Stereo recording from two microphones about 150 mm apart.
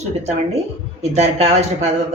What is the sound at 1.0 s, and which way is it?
Speech, 45° right (ahead or behind).